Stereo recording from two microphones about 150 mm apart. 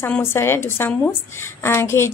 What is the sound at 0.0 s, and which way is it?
A woman's voice, 15° left (ahead or behind).